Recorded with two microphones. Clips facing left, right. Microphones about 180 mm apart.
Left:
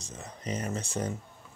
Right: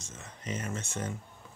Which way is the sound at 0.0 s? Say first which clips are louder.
Left 4 dB; 35° left (ahead or behind).